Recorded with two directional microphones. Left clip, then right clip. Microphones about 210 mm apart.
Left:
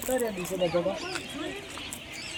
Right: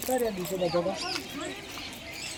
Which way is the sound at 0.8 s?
50° left (ahead or behind).